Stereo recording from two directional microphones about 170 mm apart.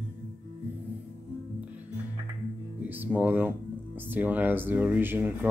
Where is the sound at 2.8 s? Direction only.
10° right (ahead or behind).